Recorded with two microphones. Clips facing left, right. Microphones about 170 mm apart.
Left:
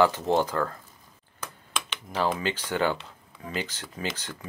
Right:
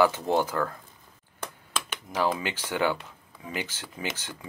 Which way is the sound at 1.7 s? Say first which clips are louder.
Even; 15° right (ahead or behind).